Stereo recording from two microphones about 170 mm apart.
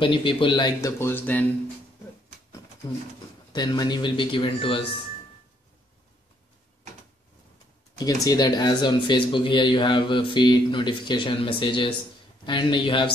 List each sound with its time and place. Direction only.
0.0 s speech: 30° left (ahead or behind); by 1.5 s 10° left (ahead or behind)
3.5 s speech: 25° left (ahead or behind)
8.0 s speech: 20° left (ahead or behind)